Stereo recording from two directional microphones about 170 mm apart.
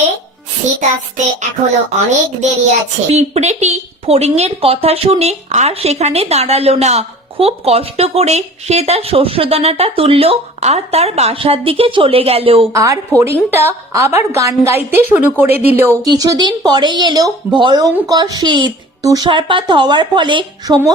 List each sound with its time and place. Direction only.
0.8 s child singing: 45° right (ahead or behind)
2.0 s a child's voice: 45° right (ahead or behind)
12.7 s a woman's voice: 20° right (ahead or behind)